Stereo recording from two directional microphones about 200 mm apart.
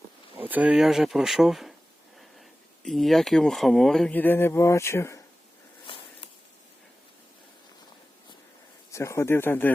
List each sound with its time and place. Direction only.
0.3 s speech: 10° right (ahead or behind); by 5.2 s 15° left (ahead or behind)
5.9 s a sound: 25° left (ahead or behind)
8.9 s speech: 15° left (ahead or behind)